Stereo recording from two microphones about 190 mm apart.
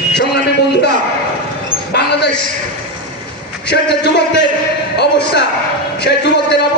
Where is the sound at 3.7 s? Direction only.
65° left (ahead or behind).